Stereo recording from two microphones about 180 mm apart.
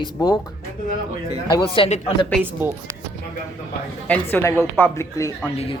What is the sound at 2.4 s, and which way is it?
Speech, 10° right (ahead or behind).